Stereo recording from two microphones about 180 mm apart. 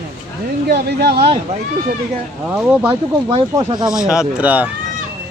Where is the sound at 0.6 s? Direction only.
60° right (ahead or behind).